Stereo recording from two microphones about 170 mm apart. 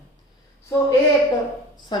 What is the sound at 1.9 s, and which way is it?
Speech, 25° left (ahead or behind).